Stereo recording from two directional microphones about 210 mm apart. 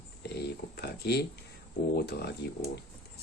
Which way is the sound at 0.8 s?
50° left (ahead or behind).